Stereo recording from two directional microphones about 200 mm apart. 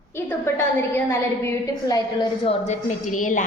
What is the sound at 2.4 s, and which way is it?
Speech, 35° left (ahead or behind).